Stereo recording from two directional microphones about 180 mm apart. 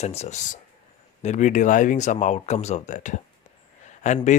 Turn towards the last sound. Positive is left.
turn(degrees=40)  # may be behind; listen again after turning